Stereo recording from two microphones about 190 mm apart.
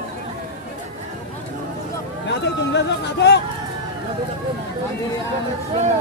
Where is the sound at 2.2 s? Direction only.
65° left (ahead or behind).